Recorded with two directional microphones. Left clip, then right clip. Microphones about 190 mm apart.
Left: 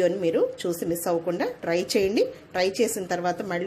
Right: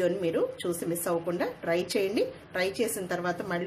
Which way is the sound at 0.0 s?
25° left (ahead or behind).